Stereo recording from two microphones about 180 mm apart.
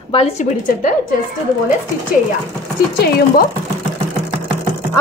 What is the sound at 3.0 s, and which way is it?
Chopping, 60° left (ahead or behind).